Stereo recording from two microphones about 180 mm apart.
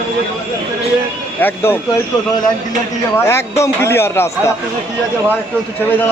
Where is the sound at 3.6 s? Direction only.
15° left (ahead or behind).